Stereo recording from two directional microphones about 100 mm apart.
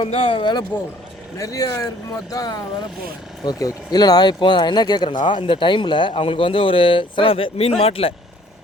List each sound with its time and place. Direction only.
0.0 s speech: 65° left (ahead or behind)
1.4 s speech: 35° left (ahead or behind); by 8.1 s 75° left (ahead or behind)